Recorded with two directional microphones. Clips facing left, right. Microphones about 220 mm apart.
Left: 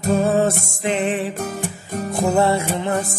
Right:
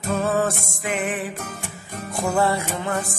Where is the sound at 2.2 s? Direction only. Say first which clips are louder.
Left 3 dB; 25° left (ahead or behind).